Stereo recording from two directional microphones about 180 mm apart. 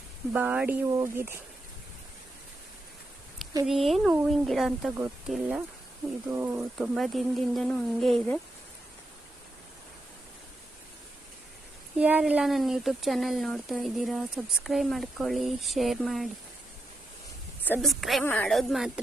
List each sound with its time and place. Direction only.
0.3 s speech: 10° right (ahead or behind)
3.7 s speech: centre (ahead or behind)
6.7 s speech: centre (ahead or behind)
11.9 s speech: 10° right (ahead or behind)
17.7 s speech: centre (ahead or behind)